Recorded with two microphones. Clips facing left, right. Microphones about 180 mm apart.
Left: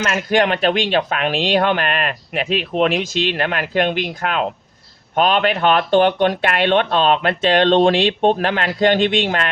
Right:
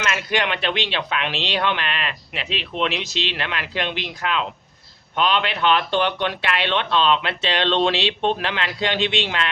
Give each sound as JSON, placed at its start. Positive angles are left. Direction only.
{"t": 0.0, "sound": "speech", "side_deg": 45}